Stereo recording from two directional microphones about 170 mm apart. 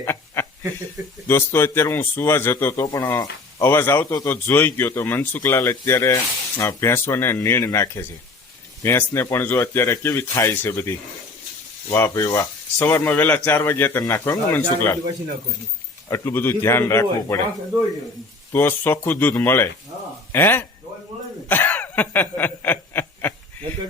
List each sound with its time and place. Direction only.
0.0 s chuckle: 15° left (ahead or behind)
1.3 s a man's voice: 15° left (ahead or behind)
16.0 s a man's voice: 15° left (ahead or behind)
18.5 s a man's voice: 10° left (ahead or behind)
21.5 s snicker: 10° left (ahead or behind)